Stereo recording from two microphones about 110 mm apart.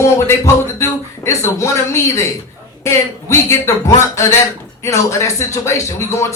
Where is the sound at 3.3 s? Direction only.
25° left (ahead or behind).